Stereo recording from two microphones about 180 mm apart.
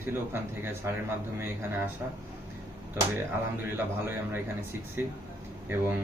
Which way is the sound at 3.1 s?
10° right (ahead or behind).